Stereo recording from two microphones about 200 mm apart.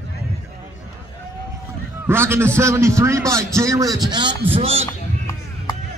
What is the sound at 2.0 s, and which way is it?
A man's voice, 10° right (ahead or behind).